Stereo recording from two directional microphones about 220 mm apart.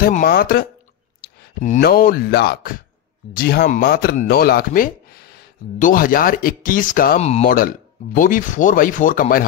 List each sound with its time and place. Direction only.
0.0 s speech: 40° left (ahead or behind)